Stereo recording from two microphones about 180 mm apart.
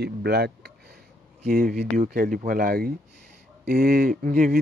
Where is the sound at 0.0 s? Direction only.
65° right (ahead or behind).